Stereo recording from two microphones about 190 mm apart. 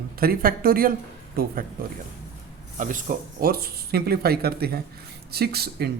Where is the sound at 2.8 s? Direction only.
45° right (ahead or behind).